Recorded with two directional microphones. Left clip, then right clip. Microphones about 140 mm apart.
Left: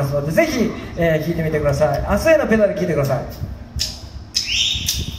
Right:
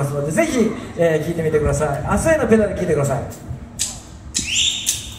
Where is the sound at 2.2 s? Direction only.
25° left (ahead or behind).